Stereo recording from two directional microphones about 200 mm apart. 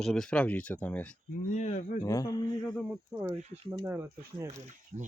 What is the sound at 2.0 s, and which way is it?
Speech, 15° left (ahead or behind).